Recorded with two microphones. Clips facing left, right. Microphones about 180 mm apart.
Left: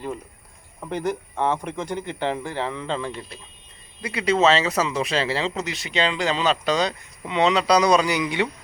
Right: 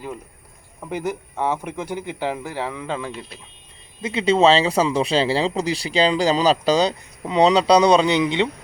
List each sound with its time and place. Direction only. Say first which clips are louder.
0.8 s speech: even; 10° right (ahead or behind)
4.0 s speech: right 3 dB; 25° right (ahead or behind)